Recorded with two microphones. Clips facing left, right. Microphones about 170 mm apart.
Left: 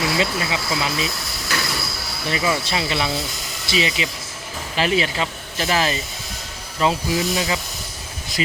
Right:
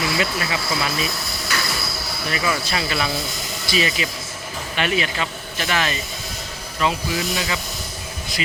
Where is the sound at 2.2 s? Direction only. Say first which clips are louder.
Left 2 dB; 25° left (ahead or behind).